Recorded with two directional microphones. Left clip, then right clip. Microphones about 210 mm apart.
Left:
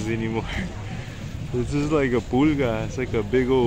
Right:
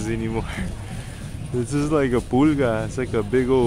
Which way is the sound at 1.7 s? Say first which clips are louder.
Right 1 dB; 15° right (ahead or behind).